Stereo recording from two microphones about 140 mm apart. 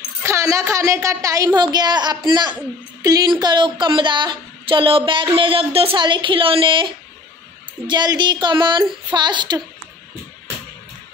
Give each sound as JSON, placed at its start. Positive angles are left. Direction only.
{"t": 0.2, "sound": "a woman's voice", "side_deg": -20}